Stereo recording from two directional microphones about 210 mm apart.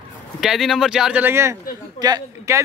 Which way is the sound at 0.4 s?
Centre (ahead or behind).